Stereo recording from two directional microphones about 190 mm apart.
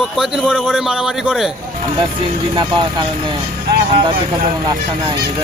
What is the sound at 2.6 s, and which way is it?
Speech, 25° right (ahead or behind).